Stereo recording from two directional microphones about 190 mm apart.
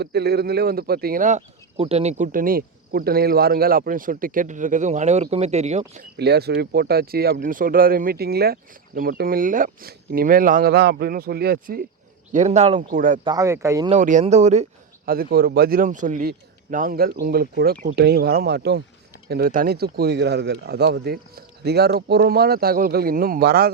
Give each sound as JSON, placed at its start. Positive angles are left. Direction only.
{"t": 0.0, "sound": "speech", "side_deg": -60}
{"t": 6.1, "sound": "speech", "side_deg": -60}
{"t": 12.3, "sound": "speech", "side_deg": -35}
{"t": 13.2, "sound": "speech", "side_deg": -15}
{"t": 13.9, "sound": "speech", "side_deg": -40}
{"t": 15.1, "sound": "speech", "side_deg": -50}